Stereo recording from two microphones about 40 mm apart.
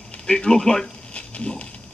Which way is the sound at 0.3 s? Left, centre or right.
Centre.